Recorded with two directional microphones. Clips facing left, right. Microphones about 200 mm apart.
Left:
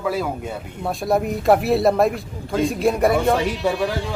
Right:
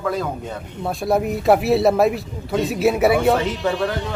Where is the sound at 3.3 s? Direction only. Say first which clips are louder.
Even; 10° left (ahead or behind).